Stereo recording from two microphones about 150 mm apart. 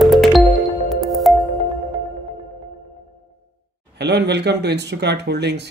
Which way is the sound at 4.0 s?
90° right.